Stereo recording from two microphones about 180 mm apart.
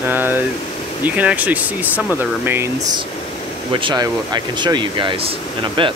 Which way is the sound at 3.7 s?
25° right (ahead or behind).